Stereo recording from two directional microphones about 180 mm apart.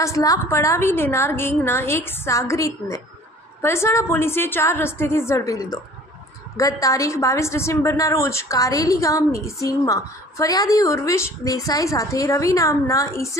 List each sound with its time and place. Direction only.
0.0 s a woman's voice: 20° left (ahead or behind)